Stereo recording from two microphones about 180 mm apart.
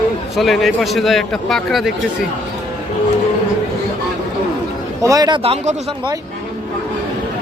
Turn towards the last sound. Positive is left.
turn(degrees=-35)  # may be behind; listen again after turning